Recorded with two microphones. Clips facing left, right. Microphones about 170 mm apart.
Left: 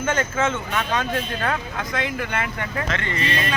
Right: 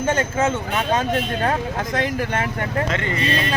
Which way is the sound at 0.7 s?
20° right (ahead or behind).